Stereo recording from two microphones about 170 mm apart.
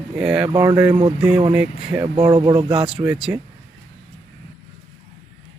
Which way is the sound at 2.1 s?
25° right (ahead or behind).